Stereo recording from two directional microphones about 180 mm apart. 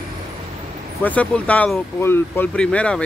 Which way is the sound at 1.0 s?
10° left (ahead or behind).